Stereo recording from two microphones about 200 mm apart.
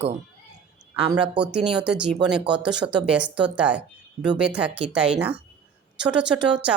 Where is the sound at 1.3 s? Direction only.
5° right (ahead or behind).